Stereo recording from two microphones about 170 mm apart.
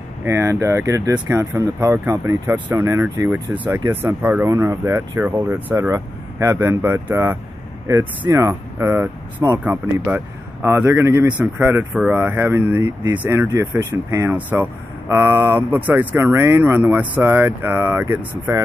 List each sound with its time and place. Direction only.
0.2 s speech: 15° right (ahead or behind)